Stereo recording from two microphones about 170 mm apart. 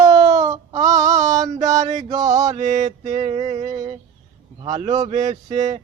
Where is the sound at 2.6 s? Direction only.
45° right (ahead or behind).